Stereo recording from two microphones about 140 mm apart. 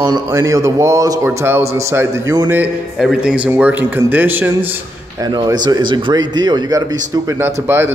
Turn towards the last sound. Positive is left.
turn(degrees=-15)  # may be behind; listen again after turning